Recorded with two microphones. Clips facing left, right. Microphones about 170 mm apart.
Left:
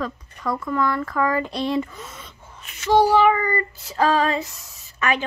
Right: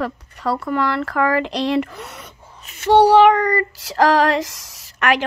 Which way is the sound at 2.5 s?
35° right (ahead or behind).